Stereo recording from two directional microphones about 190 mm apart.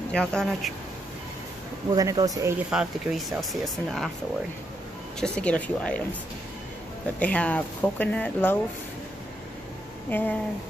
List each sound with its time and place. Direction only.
0.1 s speech: 5° left (ahead or behind)
1.9 s speech: 20° right (ahead or behind)
2.7 s speech: 5° right (ahead or behind)
5.2 s speech: 5° left (ahead or behind)
7.2 s speech: 5° left (ahead or behind)
10.0 s speech: 10° left (ahead or behind)